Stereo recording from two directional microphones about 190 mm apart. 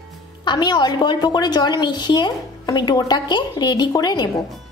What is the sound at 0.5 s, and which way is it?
A woman's voice, 25° left (ahead or behind).